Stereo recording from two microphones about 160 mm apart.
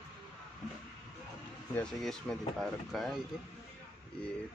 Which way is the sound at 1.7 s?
5° left (ahead or behind).